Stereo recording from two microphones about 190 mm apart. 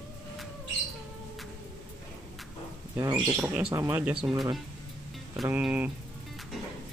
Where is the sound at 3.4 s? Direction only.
5° right (ahead or behind).